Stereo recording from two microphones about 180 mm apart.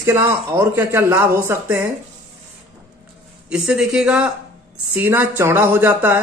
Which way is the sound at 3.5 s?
5° right (ahead or behind).